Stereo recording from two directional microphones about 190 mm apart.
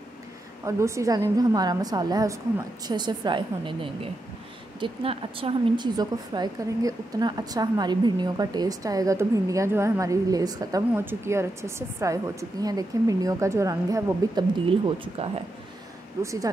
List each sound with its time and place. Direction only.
0.7 s a woman's voice: 15° right (ahead or behind)
15.2 s speech: 30° right (ahead or behind)
16.2 s speech: 15° right (ahead or behind)